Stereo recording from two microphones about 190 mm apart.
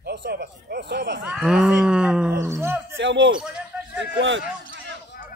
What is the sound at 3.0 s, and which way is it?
Speech, 85° right.